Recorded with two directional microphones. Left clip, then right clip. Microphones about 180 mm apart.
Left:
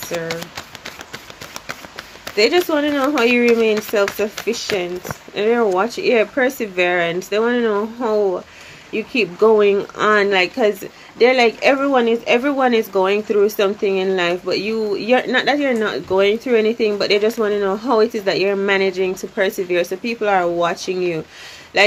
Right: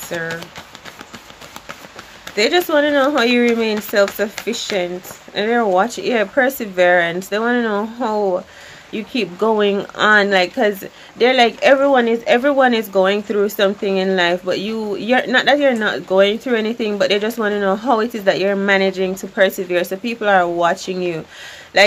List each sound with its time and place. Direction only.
2.3 s speech: 20° right (ahead or behind)